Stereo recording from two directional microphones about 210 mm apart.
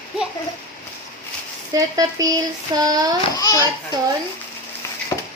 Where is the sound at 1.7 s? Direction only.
15° right (ahead or behind).